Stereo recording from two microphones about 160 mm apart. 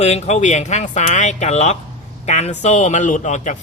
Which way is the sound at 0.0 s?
45° left (ahead or behind).